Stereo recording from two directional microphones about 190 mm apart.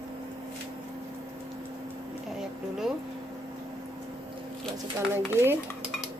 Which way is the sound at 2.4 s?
Centre (ahead or behind).